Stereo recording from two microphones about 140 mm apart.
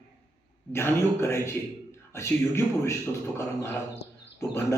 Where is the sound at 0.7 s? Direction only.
15° left (ahead or behind).